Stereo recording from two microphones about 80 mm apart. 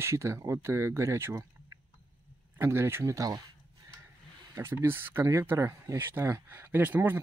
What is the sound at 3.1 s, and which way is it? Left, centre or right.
Speech, right.